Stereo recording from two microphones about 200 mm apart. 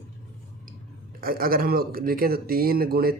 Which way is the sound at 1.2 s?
45° right (ahead or behind).